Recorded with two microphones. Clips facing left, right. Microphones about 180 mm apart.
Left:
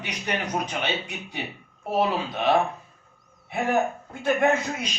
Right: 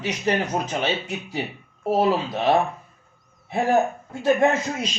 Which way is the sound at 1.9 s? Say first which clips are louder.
Right 4 dB; 30° right (ahead or behind).